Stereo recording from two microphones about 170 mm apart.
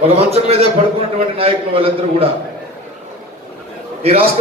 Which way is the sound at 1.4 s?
35° right (ahead or behind).